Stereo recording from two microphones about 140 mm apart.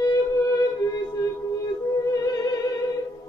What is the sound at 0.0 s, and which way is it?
Music, 25° left (ahead or behind).